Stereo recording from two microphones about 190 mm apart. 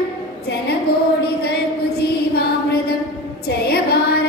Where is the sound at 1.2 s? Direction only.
55° left (ahead or behind).